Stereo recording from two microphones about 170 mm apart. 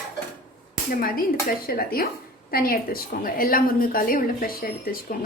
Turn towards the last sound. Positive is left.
turn(degrees=60)  # may be behind; listen again after turning